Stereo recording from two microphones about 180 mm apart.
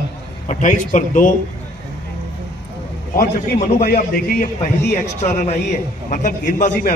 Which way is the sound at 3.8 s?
55° left (ahead or behind).